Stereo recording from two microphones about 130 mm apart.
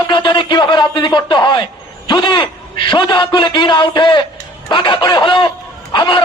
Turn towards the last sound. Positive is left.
turn(degrees=35)  # may be behind; listen again after turning